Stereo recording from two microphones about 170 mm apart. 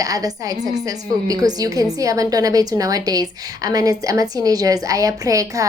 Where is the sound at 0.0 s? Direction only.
20° right (ahead or behind).